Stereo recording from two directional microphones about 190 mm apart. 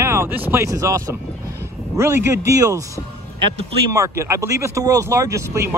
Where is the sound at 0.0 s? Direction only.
15° right (ahead or behind).